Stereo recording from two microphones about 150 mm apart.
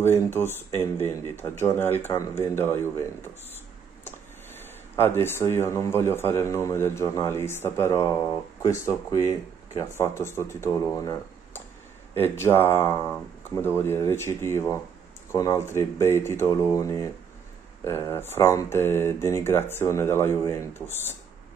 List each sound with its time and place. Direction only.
0.3 s a man's voice: 15° left (ahead or behind)
4.9 s a man's voice: 15° left (ahead or behind)